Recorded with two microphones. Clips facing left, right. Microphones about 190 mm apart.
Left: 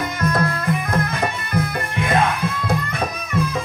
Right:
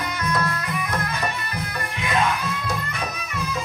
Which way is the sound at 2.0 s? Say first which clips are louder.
Left 4 dB; 55° left (ahead or behind).